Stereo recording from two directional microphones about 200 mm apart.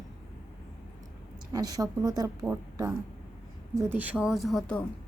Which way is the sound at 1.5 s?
20° right (ahead or behind).